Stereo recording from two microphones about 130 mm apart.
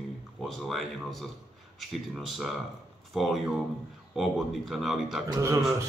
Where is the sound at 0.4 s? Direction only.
Centre (ahead or behind).